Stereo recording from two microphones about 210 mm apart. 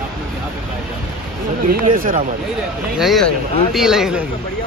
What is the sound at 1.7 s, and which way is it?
Speech, 40° right (ahead or behind).